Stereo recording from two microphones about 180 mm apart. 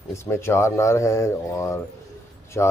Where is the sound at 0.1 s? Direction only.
15° left (ahead or behind).